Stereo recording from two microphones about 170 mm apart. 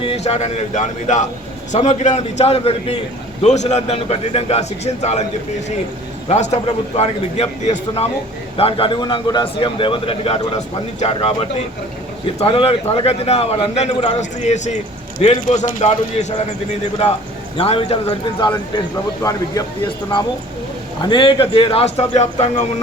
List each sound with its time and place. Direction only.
0.0 s a man's voice: 35° left (ahead or behind)
6.2 s a man's voice: 40° left (ahead or behind)
17.6 s a man's voice: 35° left (ahead or behind)
19.2 s speech: 20° left (ahead or behind)
21.0 s a man's voice: 25° left (ahead or behind)